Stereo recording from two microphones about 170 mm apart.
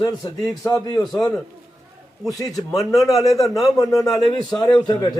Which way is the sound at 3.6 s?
20° left (ahead or behind).